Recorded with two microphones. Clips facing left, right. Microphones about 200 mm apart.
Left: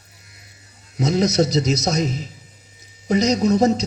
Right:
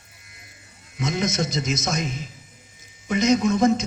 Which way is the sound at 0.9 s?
40° left (ahead or behind).